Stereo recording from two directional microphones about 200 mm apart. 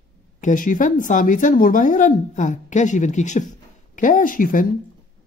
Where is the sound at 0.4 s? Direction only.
40° left (ahead or behind).